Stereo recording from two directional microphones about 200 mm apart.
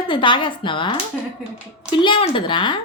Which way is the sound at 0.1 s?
25° left (ahead or behind).